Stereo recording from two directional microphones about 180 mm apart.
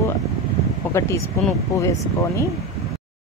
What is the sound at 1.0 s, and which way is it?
Speech, 15° left (ahead or behind).